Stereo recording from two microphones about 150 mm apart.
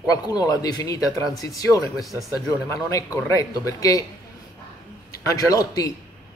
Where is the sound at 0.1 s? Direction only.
25° left (ahead or behind).